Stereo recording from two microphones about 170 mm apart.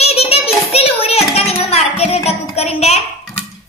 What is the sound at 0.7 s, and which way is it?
Music, 35° left (ahead or behind).